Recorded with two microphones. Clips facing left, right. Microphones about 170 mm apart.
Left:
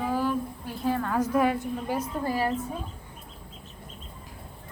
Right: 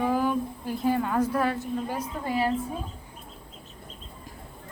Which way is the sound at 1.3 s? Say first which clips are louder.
Left 2 dB; 10° left (ahead or behind).